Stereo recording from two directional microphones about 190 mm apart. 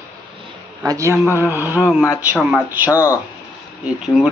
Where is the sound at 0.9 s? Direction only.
15° right (ahead or behind).